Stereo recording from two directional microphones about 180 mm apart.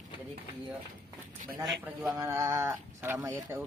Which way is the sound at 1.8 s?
5° right (ahead or behind).